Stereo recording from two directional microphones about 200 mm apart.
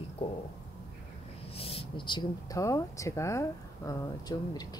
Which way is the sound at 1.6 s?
30° left (ahead or behind).